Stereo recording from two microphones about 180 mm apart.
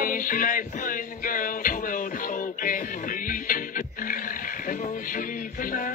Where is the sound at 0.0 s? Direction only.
50° left (ahead or behind).